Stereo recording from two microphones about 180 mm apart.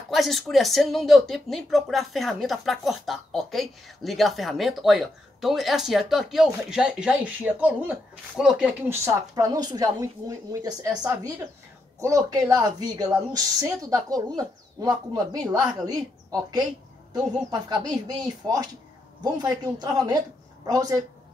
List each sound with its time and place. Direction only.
0.1 s speech: centre (ahead or behind)
8.8 s speech: 15° right (ahead or behind)